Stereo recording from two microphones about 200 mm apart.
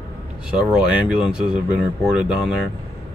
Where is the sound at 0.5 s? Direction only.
5° right (ahead or behind).